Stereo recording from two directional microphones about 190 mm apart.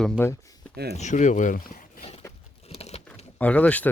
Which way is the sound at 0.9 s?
40° left (ahead or behind).